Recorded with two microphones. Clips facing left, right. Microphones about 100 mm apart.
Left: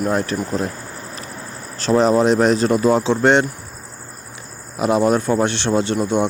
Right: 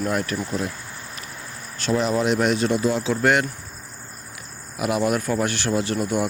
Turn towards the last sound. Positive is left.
turn(degrees=25)  # may be behind; listen again after turning